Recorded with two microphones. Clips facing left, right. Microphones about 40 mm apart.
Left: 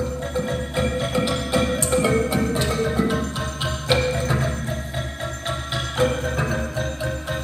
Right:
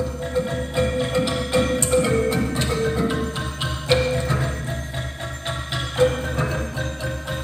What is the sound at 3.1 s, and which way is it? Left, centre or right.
Music, centre.